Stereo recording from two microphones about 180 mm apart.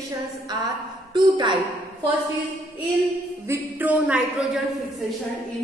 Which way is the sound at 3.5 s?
10° right (ahead or behind).